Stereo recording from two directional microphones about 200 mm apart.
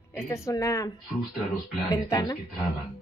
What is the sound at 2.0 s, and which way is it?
Speech, 20° left (ahead or behind).